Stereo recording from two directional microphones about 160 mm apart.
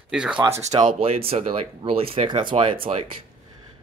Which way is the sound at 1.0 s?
40° right (ahead or behind).